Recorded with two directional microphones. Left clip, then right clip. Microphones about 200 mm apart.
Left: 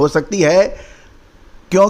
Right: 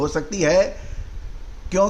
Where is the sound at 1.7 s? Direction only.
45° left (ahead or behind).